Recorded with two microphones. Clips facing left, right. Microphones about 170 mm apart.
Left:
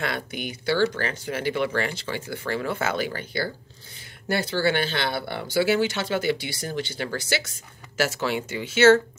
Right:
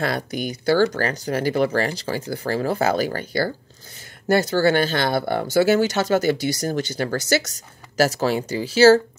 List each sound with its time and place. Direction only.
0.0 s speech: 40° right (ahead or behind)